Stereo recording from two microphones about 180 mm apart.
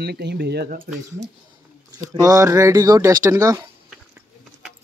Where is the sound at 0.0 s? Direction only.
65° right (ahead or behind).